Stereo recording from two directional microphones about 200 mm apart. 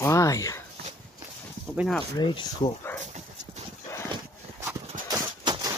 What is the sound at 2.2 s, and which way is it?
Speech, 25° left (ahead or behind).